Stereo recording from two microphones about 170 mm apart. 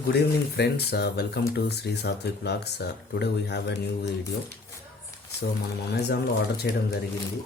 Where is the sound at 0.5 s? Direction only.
75° left (ahead or behind).